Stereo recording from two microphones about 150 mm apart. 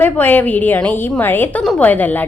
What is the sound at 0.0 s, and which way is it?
A woman's voice, 10° left (ahead or behind).